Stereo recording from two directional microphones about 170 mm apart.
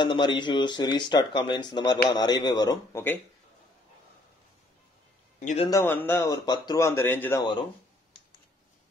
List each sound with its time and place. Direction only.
0.0 s speech: 25° left (ahead or behind)
5.4 s a man's voice: 45° left (ahead or behind)
5.7 s speech: 15° left (ahead or behind)